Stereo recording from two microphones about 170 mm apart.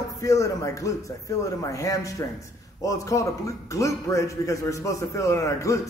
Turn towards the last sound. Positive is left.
turn(degrees=20)  # may be behind; listen again after turning